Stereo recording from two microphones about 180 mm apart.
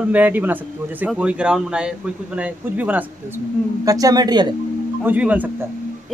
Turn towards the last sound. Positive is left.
turn(degrees=-10)  # may be behind; listen again after turning